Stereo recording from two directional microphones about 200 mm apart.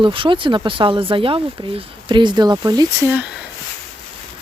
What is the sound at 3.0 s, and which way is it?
Speech, 5° right (ahead or behind).